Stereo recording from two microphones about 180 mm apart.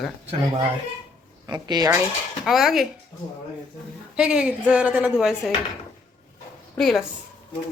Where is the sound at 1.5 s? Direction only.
20° right (ahead or behind).